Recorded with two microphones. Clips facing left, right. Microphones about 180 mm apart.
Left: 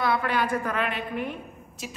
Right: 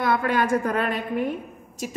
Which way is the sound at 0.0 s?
45° right (ahead or behind).